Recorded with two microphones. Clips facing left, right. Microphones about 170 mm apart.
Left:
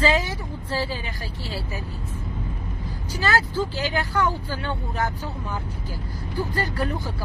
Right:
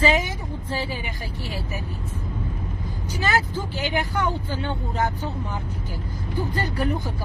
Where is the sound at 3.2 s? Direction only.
20° right (ahead or behind).